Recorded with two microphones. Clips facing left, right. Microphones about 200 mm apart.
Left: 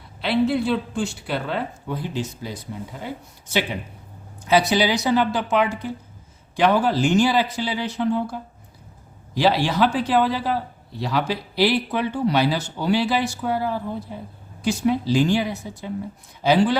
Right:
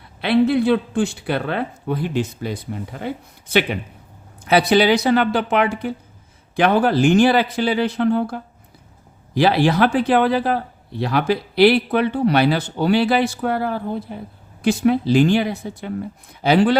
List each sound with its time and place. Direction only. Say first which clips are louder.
0.2 s speech: right 4 dB; 60° right (ahead or behind)